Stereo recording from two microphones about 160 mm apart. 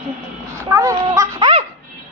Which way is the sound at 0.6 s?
20° right (ahead or behind).